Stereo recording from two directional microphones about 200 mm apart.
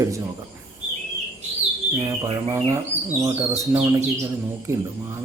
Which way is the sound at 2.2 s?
20° right (ahead or behind).